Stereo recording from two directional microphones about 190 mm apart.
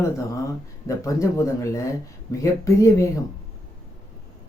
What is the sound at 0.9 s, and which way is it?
Speech, 15° left (ahead or behind).